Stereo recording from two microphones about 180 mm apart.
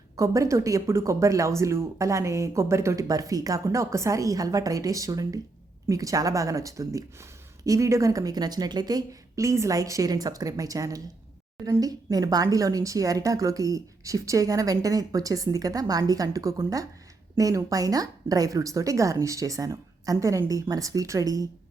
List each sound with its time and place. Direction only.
0.2 s speech: 15° right (ahead or behind)